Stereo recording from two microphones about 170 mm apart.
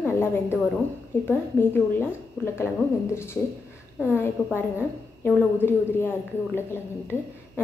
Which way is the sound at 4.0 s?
10° left (ahead or behind).